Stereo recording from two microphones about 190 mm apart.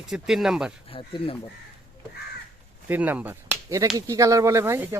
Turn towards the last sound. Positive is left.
turn(degrees=-15)  # may be behind; listen again after turning